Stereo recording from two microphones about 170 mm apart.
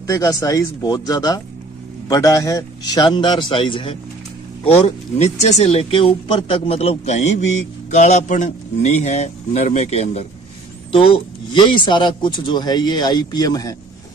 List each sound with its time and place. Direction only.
0.0 s speech: 20° left (ahead or behind)